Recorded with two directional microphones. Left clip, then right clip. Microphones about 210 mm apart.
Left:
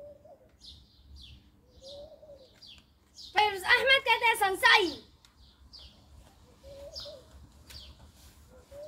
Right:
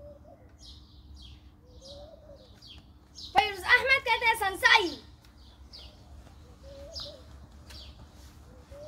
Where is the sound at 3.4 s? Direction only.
Centre (ahead or behind).